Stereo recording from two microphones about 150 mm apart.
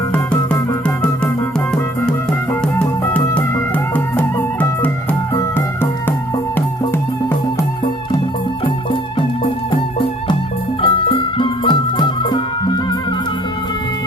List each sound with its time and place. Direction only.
0.3 s music: 20° left (ahead or behind)
1.7 s music: 5° left (ahead or behind)
8.6 s music: 35° left (ahead or behind)
10.8 s music: 35° left (ahead or behind)